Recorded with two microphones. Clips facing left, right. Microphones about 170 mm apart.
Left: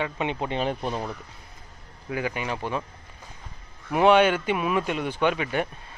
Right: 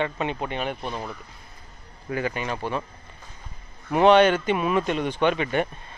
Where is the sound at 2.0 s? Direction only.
10° left (ahead or behind).